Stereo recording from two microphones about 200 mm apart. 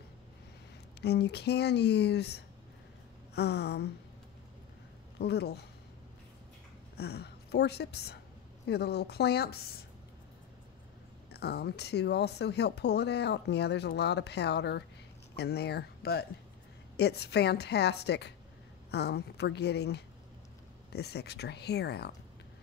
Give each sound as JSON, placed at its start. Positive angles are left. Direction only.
{"t": 1.0, "sound": "speech", "side_deg": 55}
{"t": 5.2, "sound": "speech", "side_deg": 55}
{"t": 7.0, "sound": "speech", "side_deg": 55}
{"t": 11.3, "sound": "speech", "side_deg": 55}